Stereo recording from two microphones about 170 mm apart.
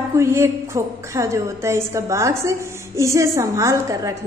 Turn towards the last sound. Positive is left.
turn(degrees=-15)  # may be behind; listen again after turning